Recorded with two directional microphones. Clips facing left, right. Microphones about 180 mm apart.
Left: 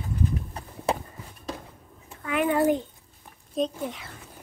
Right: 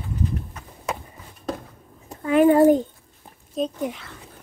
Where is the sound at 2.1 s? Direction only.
35° right (ahead or behind).